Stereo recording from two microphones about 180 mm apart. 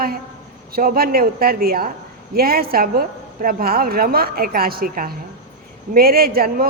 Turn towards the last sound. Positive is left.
turn(degrees=-55)  # may be behind; listen again after turning